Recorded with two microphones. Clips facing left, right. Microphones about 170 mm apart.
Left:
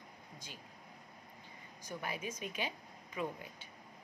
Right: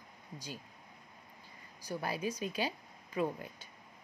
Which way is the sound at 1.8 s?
35° right (ahead or behind).